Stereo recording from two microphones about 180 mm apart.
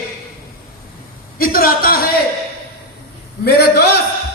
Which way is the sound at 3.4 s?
65° left (ahead or behind).